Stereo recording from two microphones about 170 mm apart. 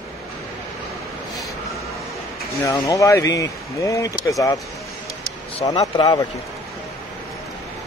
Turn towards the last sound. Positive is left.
turn(degrees=25)  # may be behind; listen again after turning